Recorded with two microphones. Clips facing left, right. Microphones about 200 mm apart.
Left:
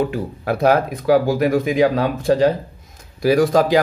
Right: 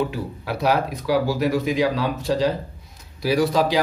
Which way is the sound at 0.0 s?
50° left (ahead or behind).